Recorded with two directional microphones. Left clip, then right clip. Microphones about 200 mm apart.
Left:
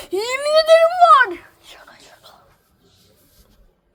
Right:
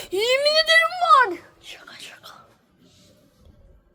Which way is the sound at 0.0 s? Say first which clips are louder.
Right 2 dB; 10° left (ahead or behind).